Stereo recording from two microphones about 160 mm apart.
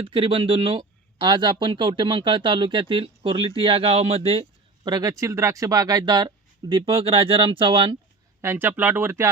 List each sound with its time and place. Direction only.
0.0 s speech: 35° right (ahead or behind)
4.8 s speech: 25° right (ahead or behind)
8.4 s speech: 15° right (ahead or behind)